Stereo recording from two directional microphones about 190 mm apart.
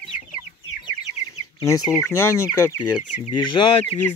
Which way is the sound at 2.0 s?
15° left (ahead or behind).